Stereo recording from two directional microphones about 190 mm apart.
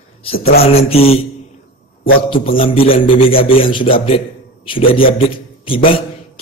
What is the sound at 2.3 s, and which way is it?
A man's voice, 30° left (ahead or behind).